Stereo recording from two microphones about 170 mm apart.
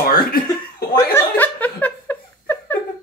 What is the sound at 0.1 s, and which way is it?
Chuckle, 60° left (ahead or behind).